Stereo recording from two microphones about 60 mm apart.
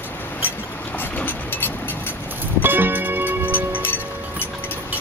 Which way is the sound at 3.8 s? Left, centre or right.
Left.